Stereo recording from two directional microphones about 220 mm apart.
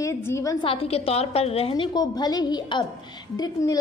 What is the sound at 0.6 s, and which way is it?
A woman's voice, 25° left (ahead or behind).